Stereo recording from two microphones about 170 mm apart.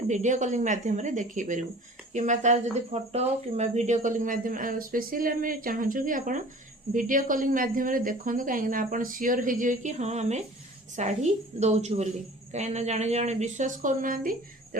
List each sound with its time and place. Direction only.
0.1 s speech: 45° right (ahead or behind)